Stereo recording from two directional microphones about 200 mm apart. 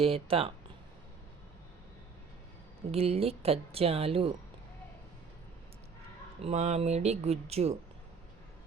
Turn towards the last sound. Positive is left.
turn(degrees=-30)  # may be behind; listen again after turning